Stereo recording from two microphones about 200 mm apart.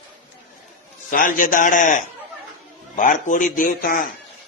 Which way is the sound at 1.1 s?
40° left (ahead or behind).